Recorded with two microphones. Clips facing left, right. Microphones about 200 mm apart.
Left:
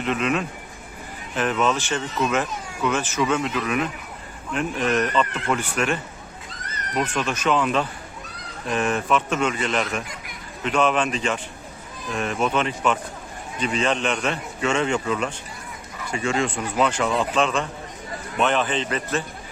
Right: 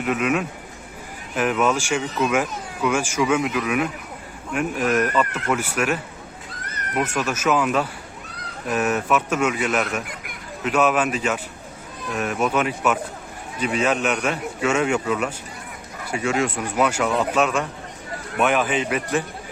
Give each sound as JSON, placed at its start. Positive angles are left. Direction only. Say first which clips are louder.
{"t": 0.0, "sound": "speech", "louder": "right 2 dB", "side_deg": -10}